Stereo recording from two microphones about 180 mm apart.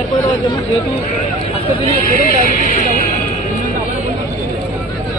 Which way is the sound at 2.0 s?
55° left (ahead or behind).